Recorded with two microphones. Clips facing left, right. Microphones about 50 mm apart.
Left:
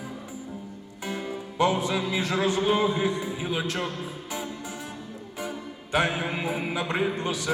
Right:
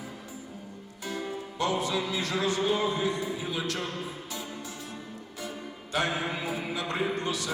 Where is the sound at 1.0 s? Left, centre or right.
Left.